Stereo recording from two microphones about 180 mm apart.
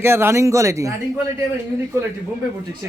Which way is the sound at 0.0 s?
15° right (ahead or behind).